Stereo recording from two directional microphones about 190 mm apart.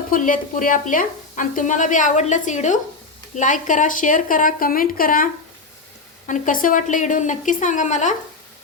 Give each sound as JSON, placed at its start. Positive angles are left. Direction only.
{"t": 0.1, "sound": "speech", "side_deg": 45}